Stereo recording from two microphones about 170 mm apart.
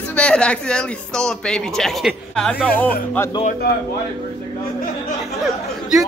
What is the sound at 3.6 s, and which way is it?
Speech, 70° left (ahead or behind).